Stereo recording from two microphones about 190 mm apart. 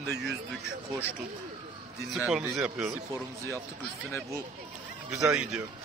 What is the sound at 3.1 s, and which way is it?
Speech, 15° right (ahead or behind).